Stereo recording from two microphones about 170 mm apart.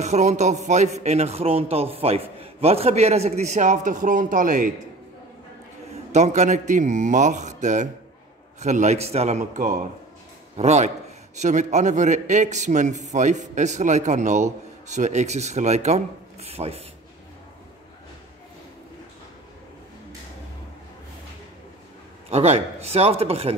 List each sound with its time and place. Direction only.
0.0 s a man's voice: 40° right (ahead or behind)
6.1 s a man's voice: 45° right (ahead or behind)
22.3 s a man's voice: 40° right (ahead or behind)